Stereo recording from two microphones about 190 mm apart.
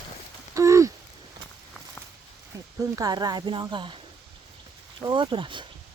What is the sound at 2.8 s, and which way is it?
Speech, 20° right (ahead or behind).